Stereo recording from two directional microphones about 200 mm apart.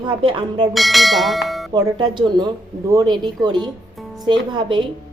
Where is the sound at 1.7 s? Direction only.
20° right (ahead or behind).